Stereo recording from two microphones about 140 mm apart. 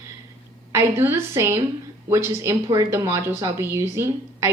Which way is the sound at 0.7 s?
20° right (ahead or behind).